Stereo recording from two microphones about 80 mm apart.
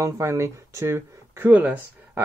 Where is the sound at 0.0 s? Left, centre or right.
Right.